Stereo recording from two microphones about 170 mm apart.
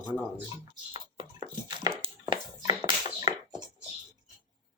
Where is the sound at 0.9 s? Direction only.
25° right (ahead or behind).